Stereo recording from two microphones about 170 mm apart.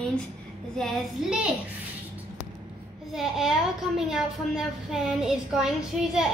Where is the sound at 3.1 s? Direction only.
Centre (ahead or behind).